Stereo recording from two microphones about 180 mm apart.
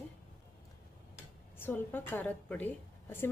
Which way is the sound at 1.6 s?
10° left (ahead or behind).